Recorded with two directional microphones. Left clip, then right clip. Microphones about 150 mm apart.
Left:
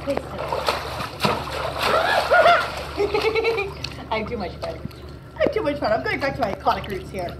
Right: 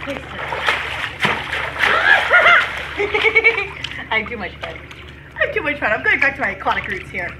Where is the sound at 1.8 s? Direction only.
45° right (ahead or behind).